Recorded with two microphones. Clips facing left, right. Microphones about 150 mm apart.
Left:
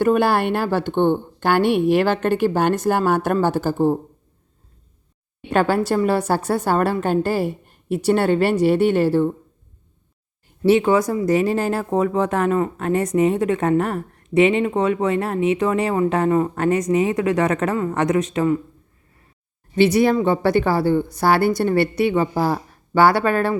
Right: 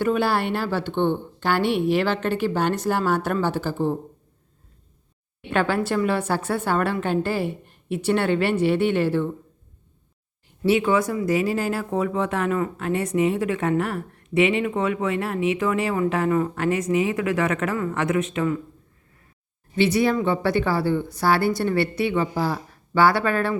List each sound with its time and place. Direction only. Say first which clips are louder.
0.0 s a woman's voice: left 5 dB; 50° left (ahead or behind)
5.5 s speech: left 4 dB; 40° left (ahead or behind)
10.7 s speech: left 4 dB; 40° left (ahead or behind)
19.7 s a woman's voice: left 4 dB; 45° left (ahead or behind)